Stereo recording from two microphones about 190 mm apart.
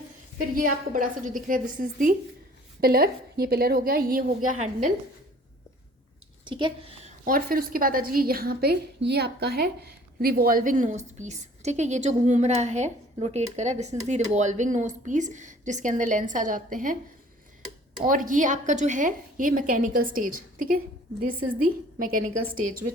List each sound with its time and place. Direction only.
0.5 s a woman's voice: 45° right (ahead or behind)
6.4 s a woman's voice: 25° right (ahead or behind)
7.3 s a woman's voice: 50° right (ahead or behind)
18.0 s a woman's voice: 45° right (ahead or behind)